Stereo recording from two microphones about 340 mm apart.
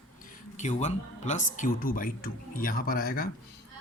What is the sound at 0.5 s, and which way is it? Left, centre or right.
Speech, left.